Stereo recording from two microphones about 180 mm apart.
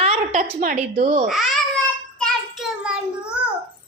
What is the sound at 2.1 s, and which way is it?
Child singing, centre (ahead or behind).